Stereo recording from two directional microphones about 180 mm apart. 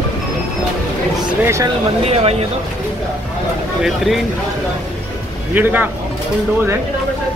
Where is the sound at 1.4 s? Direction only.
15° right (ahead or behind).